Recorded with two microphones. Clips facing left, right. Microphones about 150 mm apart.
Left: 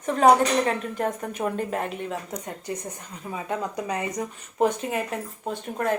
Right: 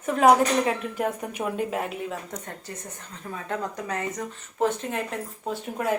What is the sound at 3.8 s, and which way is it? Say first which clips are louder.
Speech: left 2 dB; 15° left (ahead or behind).